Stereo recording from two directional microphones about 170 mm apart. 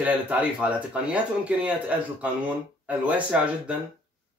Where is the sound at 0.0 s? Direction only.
10° right (ahead or behind).